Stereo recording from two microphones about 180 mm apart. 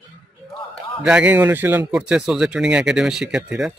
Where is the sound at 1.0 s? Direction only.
5° right (ahead or behind).